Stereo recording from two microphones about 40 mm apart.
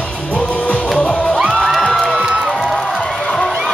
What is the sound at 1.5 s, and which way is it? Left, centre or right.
Music, centre.